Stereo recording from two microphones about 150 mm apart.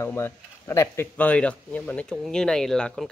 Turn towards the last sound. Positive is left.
turn(degrees=5)  # may be behind; listen again after turning